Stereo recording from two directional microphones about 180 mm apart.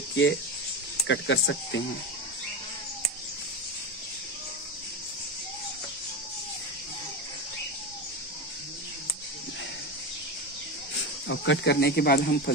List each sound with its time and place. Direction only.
0.1 s speech: 75° left (ahead or behind)
11.2 s speech: 80° left; by 12.5 s 60° left (ahead or behind)